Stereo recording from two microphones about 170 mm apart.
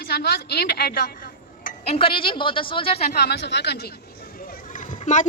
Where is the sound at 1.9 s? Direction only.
35° left (ahead or behind).